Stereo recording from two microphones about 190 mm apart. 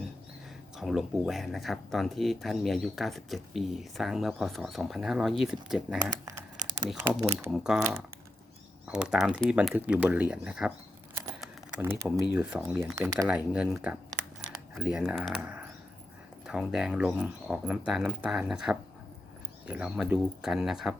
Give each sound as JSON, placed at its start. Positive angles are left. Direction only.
{"t": 0.8, "sound": "speech", "side_deg": 0}
{"t": 6.7, "sound": "speech", "side_deg": -20}
{"t": 7.3, "sound": "speech", "side_deg": -5}
{"t": 8.9, "sound": "speech", "side_deg": -5}
{"t": 11.3, "sound": "typing", "side_deg": -10}
{"t": 12.3, "sound": "speech", "side_deg": -5}
{"t": 13.0, "sound": "speech", "side_deg": -15}
{"t": 13.2, "sound": "speech", "side_deg": -5}